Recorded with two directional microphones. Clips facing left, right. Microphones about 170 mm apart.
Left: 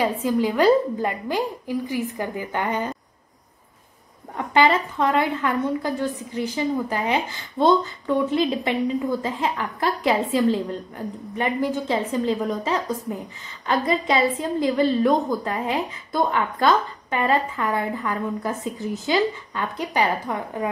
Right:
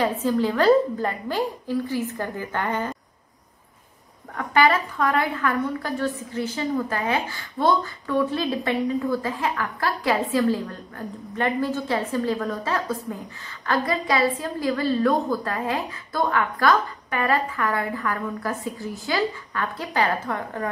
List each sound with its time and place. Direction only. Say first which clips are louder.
0.0 s a woman's voice: left 1 dB; 15° left (ahead or behind)
4.4 s a woman's voice: left 1 dB; 20° left (ahead or behind)